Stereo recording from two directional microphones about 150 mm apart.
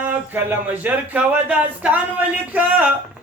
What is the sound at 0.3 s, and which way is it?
Speech, 10° right (ahead or behind).